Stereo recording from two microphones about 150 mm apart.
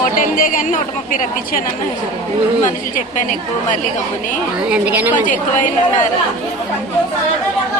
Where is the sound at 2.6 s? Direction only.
60° left (ahead or behind).